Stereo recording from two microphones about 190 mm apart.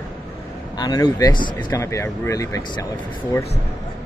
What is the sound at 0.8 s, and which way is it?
Speech, 20° left (ahead or behind).